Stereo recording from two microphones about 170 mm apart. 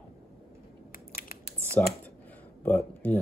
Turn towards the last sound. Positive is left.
turn(degrees=10)  # may be behind; listen again after turning